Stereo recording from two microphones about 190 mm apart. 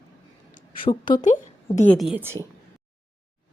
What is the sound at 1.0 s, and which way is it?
Speech, 45° left (ahead or behind).